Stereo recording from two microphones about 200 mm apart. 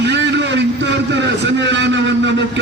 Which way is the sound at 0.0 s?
60° right (ahead or behind).